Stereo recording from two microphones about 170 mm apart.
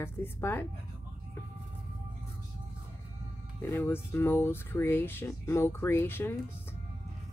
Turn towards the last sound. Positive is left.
turn(degrees=15)  # may be behind; listen again after turning